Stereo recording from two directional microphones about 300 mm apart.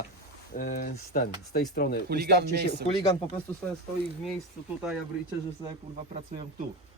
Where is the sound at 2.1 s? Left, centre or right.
Right.